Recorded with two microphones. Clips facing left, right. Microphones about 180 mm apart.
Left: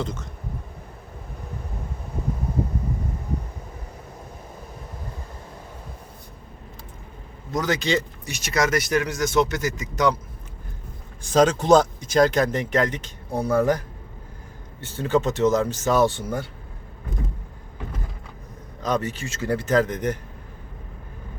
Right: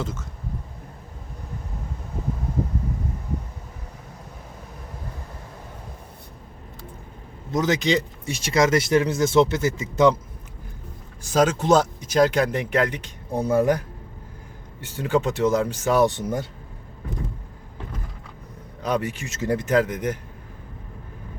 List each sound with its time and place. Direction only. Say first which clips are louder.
0.0 s speech: left 1 dB; 5° right (ahead or behind)
7.5 s speech: right 2 dB; 20° right (ahead or behind)
8.3 s speech: right 3 dB; 30° right (ahead or behind)
11.2 s speech: left 2 dB; 5° right (ahead or behind)
18.8 s speech: even; 10° right (ahead or behind)